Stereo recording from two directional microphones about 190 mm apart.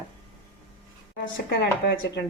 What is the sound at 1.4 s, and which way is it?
Speech, 65° left (ahead or behind).